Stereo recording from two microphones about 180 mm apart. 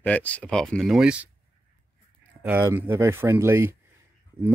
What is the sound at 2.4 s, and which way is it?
Speech, 10° right (ahead or behind).